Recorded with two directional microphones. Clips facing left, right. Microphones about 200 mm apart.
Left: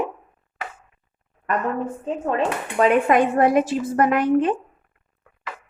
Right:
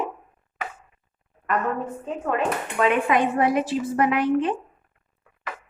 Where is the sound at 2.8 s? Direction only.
45° left (ahead or behind).